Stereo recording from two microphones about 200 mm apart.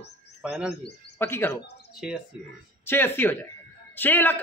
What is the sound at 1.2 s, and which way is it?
Speech, 15° left (ahead or behind).